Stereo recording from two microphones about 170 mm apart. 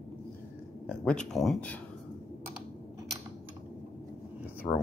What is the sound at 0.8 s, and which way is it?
Speech, 5° left (ahead or behind).